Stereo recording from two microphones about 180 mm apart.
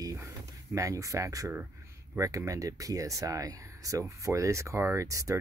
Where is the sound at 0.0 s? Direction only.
20° right (ahead or behind).